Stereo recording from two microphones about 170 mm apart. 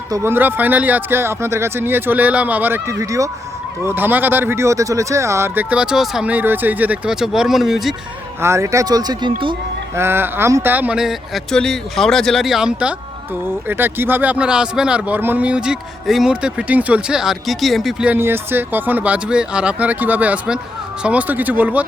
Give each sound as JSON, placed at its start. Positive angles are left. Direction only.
{"t": 0.1, "sound": "a man's voice", "side_deg": -15}
{"t": 8.4, "sound": "a man's voice", "side_deg": -15}